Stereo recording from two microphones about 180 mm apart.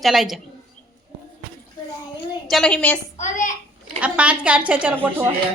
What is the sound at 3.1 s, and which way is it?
Speech, 45° left (ahead or behind).